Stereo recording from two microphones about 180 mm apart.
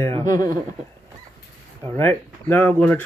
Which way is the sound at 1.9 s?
10° left (ahead or behind).